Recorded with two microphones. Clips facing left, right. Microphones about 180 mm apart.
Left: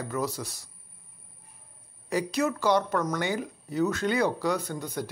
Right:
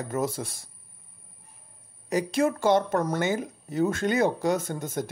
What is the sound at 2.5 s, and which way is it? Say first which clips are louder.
Speech: right 2 dB; 50° right (ahead or behind).